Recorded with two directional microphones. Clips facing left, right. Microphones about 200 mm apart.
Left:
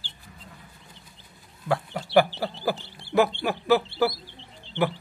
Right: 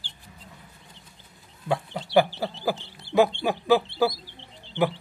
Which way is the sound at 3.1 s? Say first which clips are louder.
Right 1 dB; 15° right (ahead or behind).